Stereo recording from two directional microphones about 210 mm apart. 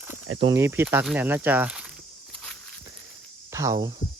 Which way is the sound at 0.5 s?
10° right (ahead or behind).